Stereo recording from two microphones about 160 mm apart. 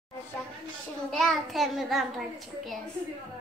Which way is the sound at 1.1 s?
Centre (ahead or behind).